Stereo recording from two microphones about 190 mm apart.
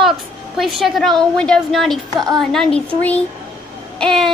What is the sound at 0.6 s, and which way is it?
Child singing, centre (ahead or behind).